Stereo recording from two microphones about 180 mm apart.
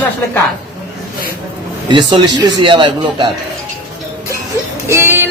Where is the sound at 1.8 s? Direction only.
25° right (ahead or behind).